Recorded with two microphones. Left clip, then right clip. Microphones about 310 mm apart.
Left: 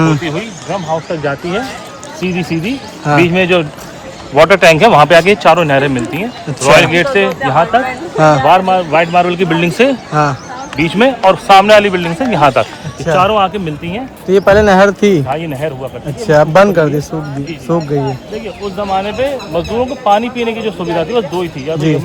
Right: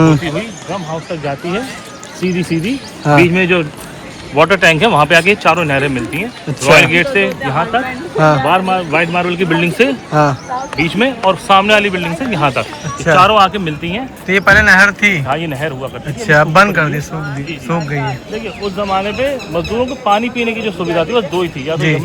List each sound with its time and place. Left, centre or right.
1.2 s speech: left
3.0 s speech: centre
3.3 s speech: left
7.9 s speech: centre
8.4 s speech: left
10.1 s speech: centre
10.8 s speech: left
14.3 s speech: centre
16.2 s speech: centre; by 21.8 s left